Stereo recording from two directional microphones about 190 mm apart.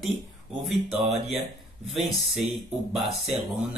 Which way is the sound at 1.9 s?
Centre (ahead or behind).